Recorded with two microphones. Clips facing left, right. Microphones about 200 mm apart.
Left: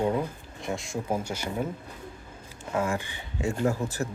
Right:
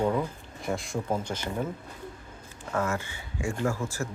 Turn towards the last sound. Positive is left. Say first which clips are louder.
# left 2 dB
turn(degrees=20)  # may be behind; listen again after turning